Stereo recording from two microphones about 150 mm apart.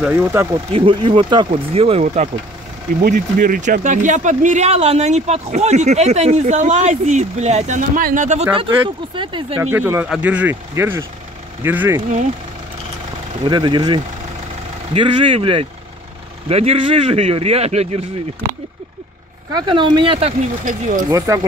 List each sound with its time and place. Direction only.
0.0 s speech: 15° right (ahead or behind)
0.5 s speech: 35° right (ahead or behind)
3.0 s speech: 70° right (ahead or behind); by 8.5 s 55° right (ahead or behind)
8.5 s speech: 35° right (ahead or behind)
9.6 s speech: 15° right (ahead or behind)
13.4 s speech: 30° right (ahead or behind)
19.5 s speech: 30° right (ahead or behind); by 21.0 s 55° right (ahead or behind)
21.3 s speech: 20° right (ahead or behind)